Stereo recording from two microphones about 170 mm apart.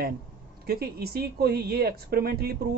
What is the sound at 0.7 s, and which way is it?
Speech, 65° right (ahead or behind).